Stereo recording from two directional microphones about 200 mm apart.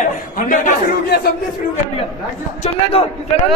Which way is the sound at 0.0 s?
40° left (ahead or behind).